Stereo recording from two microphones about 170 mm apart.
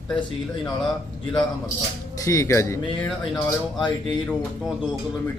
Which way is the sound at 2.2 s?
20° left (ahead or behind).